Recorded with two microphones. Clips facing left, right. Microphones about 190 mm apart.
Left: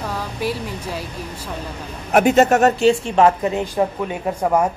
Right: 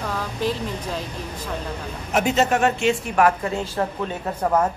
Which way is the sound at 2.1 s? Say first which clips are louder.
Left 6 dB; 55° left (ahead or behind).